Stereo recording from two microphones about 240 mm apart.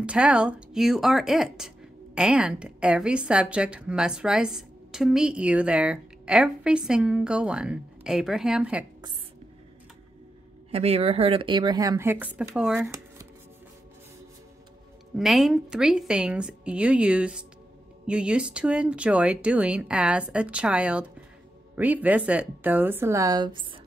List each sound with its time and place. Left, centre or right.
0.0 s a woman's voice: centre
10.7 s speech: right
15.1 s a woman's voice: centre